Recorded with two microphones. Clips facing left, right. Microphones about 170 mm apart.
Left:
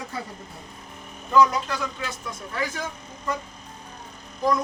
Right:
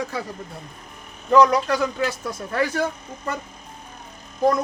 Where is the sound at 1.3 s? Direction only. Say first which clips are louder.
Right 4 dB; 65° right (ahead or behind).